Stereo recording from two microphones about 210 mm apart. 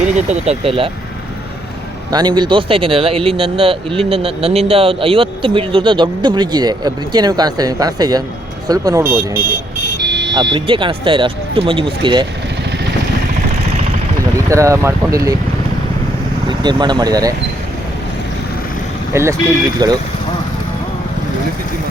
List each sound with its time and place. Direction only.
0.0 s speech: 35° right (ahead or behind)
2.0 s speech: 20° right (ahead or behind)
10.0 s vehicle: 55° right (ahead or behind)
10.5 s speech: 25° right (ahead or behind)
14.5 s speech: 15° right (ahead or behind)
16.5 s speech: 20° right (ahead or behind)
19.1 s speech: 15° right (ahead or behind)